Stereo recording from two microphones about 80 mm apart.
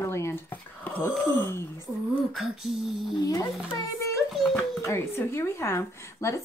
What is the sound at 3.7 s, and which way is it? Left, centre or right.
A child's voice, left.